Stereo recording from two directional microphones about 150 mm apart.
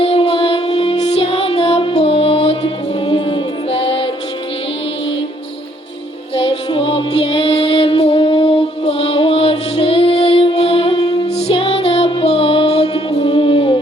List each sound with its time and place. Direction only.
0.0 s music: 45° left (ahead or behind)
6.3 s music: 30° left (ahead or behind)
11.0 s music: 25° left (ahead or behind)
11.3 s music: 40° left (ahead or behind)